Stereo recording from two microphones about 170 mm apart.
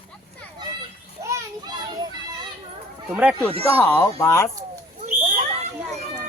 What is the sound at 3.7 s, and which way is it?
Speech, 10° left (ahead or behind).